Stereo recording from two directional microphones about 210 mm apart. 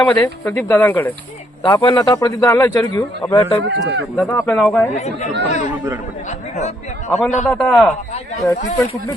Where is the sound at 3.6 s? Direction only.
55° right (ahead or behind).